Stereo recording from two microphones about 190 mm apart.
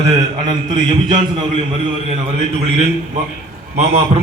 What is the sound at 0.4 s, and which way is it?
A man's voice, 25° right (ahead or behind).